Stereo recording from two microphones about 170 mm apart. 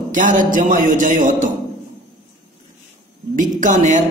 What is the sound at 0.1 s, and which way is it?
A man's voice, 50° right (ahead or behind).